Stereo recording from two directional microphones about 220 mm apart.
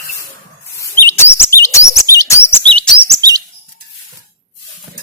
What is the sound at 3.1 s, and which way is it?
Chirp, 15° right (ahead or behind).